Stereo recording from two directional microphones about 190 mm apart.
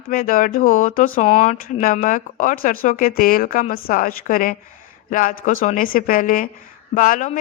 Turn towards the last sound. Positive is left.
turn(degrees=40)  # may be behind; listen again after turning